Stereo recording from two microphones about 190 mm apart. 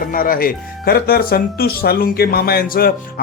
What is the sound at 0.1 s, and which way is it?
Speech, 45° left (ahead or behind).